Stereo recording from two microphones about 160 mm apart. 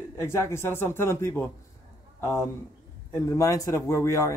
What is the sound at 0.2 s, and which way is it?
A man's voice, 15° left (ahead or behind).